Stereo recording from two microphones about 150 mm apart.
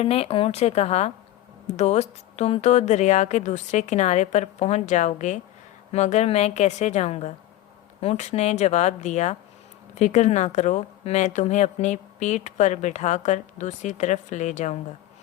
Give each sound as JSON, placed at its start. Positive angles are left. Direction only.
{"t": 0.0, "sound": "speech", "side_deg": 40}